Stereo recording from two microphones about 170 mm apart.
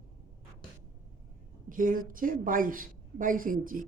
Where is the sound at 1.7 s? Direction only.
55° right (ahead or behind).